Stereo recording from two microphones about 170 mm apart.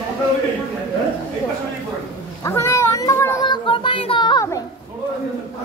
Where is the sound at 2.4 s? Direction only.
15° left (ahead or behind).